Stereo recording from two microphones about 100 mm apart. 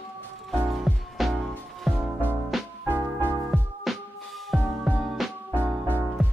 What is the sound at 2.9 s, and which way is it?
Music, 20° right (ahead or behind).